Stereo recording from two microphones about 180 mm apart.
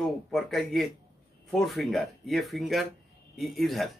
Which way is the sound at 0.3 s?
Centre (ahead or behind).